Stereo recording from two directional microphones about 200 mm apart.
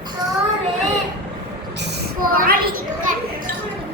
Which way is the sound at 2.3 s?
45° right (ahead or behind).